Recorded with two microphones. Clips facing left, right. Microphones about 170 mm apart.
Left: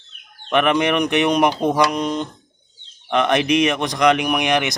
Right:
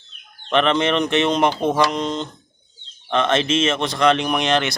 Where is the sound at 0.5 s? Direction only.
15° left (ahead or behind).